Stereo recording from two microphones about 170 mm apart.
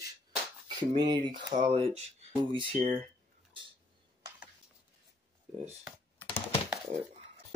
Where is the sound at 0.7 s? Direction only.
25° right (ahead or behind).